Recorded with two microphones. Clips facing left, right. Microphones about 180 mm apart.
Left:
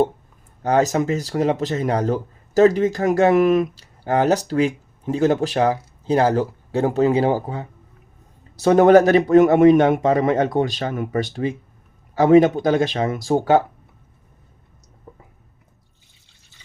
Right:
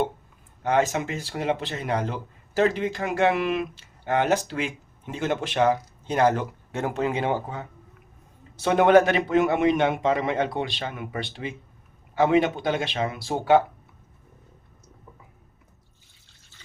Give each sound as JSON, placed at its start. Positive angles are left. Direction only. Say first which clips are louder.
{"t": 0.6, "sound": "a man's voice", "louder": "left 5 dB", "side_deg": 40}